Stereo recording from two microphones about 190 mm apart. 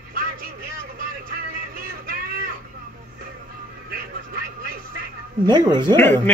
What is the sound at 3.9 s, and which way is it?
Vehicle, 50° right (ahead or behind).